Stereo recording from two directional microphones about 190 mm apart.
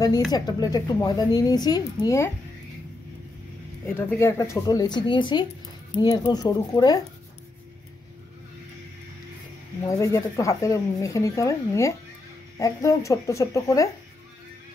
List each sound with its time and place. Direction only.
0.3 s speech: 20° left (ahead or behind)
3.8 s speech: 10° left (ahead or behind)
9.8 s speech: 15° left (ahead or behind)